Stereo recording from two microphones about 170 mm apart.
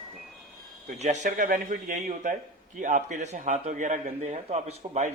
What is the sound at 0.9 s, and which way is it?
A man's voice, 45° right (ahead or behind).